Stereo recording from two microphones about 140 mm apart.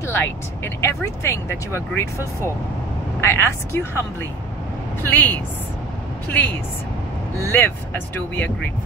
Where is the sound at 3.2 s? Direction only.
15° left (ahead or behind).